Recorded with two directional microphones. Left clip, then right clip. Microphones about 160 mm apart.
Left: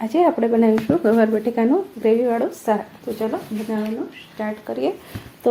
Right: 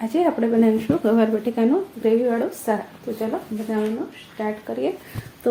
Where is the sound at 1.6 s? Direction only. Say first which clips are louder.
Left 2 dB; 25° left (ahead or behind).